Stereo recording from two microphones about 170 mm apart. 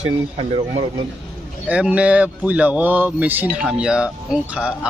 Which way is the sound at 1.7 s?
10° right (ahead or behind).